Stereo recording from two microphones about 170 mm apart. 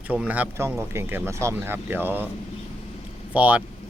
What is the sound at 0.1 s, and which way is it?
Speech, 10° right (ahead or behind).